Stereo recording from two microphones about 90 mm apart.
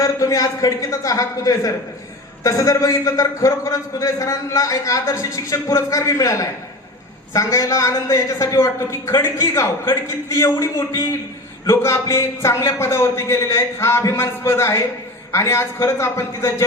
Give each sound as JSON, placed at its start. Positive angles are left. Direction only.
{"t": 0.0, "sound": "a man's voice", "side_deg": 40}